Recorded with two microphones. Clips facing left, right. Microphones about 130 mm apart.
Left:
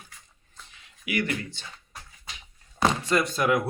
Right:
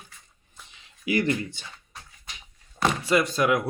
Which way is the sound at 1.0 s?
30° right (ahead or behind).